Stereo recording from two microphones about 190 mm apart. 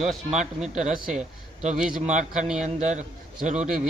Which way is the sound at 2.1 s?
40° right (ahead or behind).